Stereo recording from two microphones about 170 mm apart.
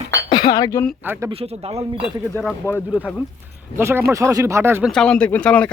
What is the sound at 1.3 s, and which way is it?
Speech, 35° right (ahead or behind).